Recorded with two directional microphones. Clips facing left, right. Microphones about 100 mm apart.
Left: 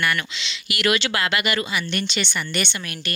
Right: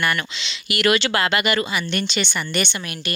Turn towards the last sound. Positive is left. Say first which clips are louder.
# right 2 dB
turn(degrees=-20)  # may be behind; listen again after turning